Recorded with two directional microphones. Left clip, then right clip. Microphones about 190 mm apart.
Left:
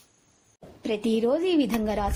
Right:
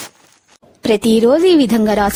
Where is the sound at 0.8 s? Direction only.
70° right (ahead or behind).